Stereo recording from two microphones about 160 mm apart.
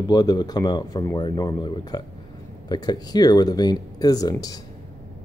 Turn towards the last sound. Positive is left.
turn(degrees=25)  # may be behind; listen again after turning